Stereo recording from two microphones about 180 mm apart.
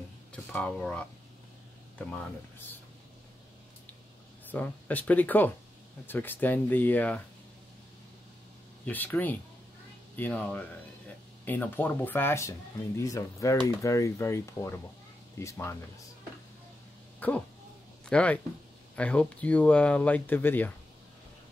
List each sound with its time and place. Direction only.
0.3 s speech: 5° left (ahead or behind)
4.5 s speech: 10° left (ahead or behind)
8.8 s speech: 10° left (ahead or behind)
17.2 s speech: 10° left (ahead or behind)